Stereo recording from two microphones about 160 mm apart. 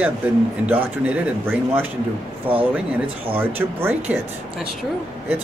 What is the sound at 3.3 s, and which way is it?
Speech, 15° right (ahead or behind).